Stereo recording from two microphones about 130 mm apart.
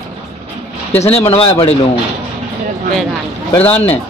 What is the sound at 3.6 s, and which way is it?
Speech, 15° left (ahead or behind).